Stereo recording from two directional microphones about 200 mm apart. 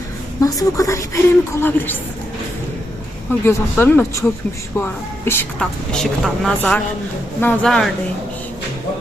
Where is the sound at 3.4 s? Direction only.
10° left (ahead or behind).